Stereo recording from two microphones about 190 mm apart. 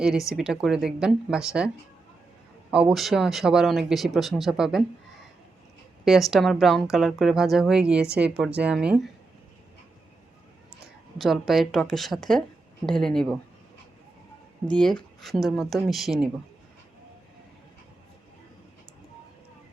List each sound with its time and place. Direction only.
0.0 s speech: centre (ahead or behind)
2.9 s speech: centre (ahead or behind)
6.1 s speech: centre (ahead or behind)
11.2 s speech: centre (ahead or behind)
14.7 s speech: 5° left (ahead or behind)